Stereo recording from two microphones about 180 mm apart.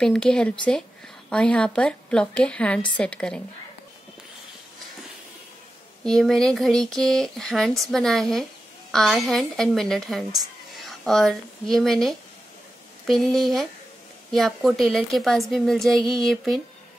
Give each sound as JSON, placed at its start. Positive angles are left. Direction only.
{"t": 0.0, "sound": "speech", "side_deg": 5}
{"t": 6.0, "sound": "speech", "side_deg": 0}